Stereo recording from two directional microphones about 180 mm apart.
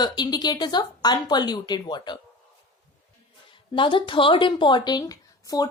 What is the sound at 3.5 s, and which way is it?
A woman's voice, 25° left (ahead or behind).